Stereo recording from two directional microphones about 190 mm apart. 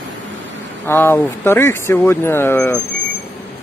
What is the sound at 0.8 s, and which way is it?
Speech, 10° left (ahead or behind).